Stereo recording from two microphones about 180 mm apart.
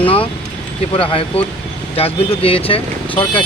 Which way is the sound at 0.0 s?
30° left (ahead or behind).